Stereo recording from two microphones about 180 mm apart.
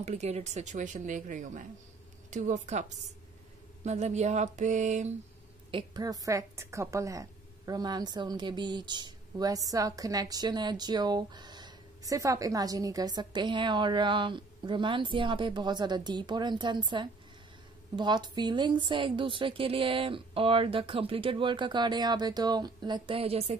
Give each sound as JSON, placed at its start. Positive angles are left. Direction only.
{"t": 0.0, "sound": "speech", "side_deg": -35}
{"t": 2.3, "sound": "a sound", "side_deg": -40}
{"t": 5.7, "sound": "a woman's voice", "side_deg": -25}